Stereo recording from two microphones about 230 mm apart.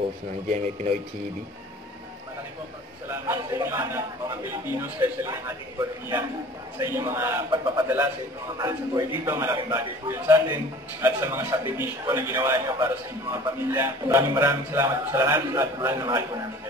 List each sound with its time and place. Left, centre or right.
0.5 s speech: right
3.1 s a man's voice: centre